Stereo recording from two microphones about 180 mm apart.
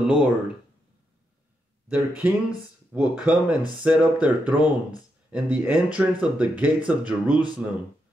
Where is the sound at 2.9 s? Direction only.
5° right (ahead or behind).